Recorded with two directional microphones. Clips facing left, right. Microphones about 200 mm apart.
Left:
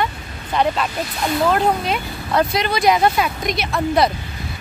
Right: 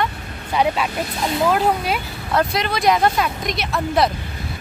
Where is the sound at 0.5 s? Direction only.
10° right (ahead or behind).